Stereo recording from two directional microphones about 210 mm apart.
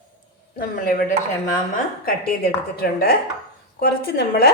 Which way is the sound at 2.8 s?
45° left (ahead or behind).